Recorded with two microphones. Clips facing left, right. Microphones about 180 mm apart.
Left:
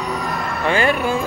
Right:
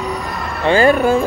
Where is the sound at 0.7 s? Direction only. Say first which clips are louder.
Right 6 dB; 35° right (ahead or behind).